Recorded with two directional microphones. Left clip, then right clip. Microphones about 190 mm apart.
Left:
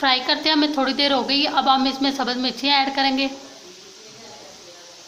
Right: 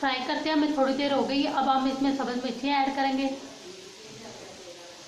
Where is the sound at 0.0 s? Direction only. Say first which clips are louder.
Left 9 dB; 50° left (ahead or behind).